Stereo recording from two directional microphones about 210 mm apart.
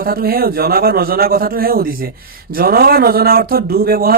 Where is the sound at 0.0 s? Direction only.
45° right (ahead or behind).